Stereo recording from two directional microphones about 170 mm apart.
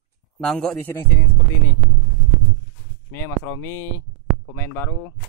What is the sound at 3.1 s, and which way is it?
Speech, 15° left (ahead or behind).